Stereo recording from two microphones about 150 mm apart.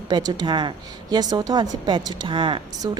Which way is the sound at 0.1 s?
25° right (ahead or behind).